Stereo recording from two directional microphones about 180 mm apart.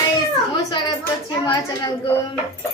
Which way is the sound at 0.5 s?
20° left (ahead or behind).